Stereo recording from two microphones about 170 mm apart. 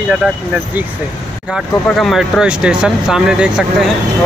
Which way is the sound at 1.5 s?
Centre (ahead or behind).